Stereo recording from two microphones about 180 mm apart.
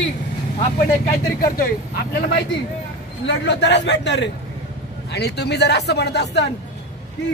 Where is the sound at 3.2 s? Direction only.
75° left (ahead or behind).